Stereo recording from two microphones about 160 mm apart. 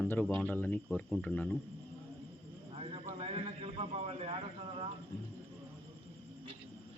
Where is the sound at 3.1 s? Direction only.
40° right (ahead or behind).